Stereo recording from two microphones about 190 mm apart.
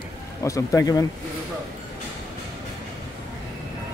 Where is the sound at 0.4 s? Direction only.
15° left (ahead or behind).